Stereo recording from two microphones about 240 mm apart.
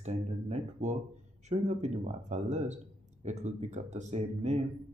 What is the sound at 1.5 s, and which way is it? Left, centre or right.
A man's voice, right.